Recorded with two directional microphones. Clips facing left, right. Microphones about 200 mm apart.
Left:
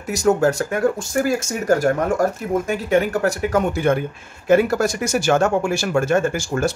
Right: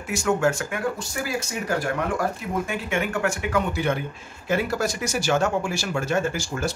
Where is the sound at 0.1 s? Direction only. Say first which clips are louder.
Left 5 dB; 40° left (ahead or behind).